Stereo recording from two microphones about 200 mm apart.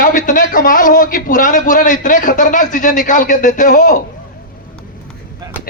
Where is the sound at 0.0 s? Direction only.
40° left (ahead or behind).